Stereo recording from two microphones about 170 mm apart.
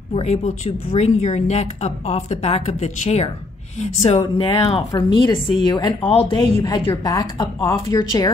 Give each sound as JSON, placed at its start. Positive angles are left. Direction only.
{"t": 0.1, "sound": "speech", "side_deg": 40}